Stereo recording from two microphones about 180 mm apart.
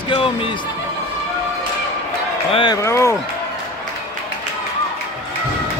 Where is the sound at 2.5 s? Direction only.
30° left (ahead or behind).